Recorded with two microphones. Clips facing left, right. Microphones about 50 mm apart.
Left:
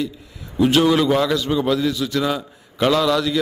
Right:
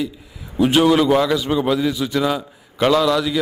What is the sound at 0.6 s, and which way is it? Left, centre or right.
A man's voice, centre.